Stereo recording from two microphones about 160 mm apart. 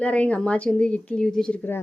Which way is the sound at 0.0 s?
10° left (ahead or behind).